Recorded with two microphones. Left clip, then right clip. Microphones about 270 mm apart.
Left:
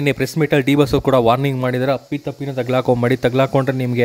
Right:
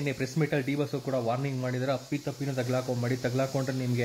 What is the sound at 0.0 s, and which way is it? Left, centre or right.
Speech, left.